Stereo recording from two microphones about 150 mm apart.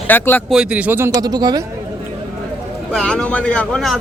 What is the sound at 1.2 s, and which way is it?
Speech, 25° right (ahead or behind).